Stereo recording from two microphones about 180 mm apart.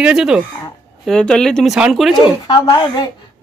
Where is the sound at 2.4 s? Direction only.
20° left (ahead or behind).